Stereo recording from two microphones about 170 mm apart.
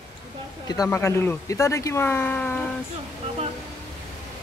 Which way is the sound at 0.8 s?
15° left (ahead or behind).